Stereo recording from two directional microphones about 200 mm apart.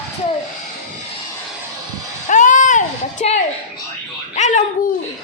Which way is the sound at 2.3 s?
40° left (ahead or behind).